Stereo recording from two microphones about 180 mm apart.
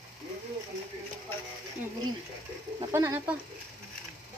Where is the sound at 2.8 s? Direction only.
15° right (ahead or behind).